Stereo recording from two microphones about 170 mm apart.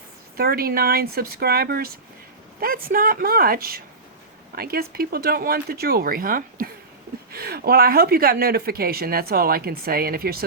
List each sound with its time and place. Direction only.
0.3 s speech: 65° right (ahead or behind)